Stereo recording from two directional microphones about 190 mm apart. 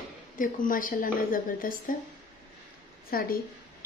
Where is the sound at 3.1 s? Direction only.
50° left (ahead or behind).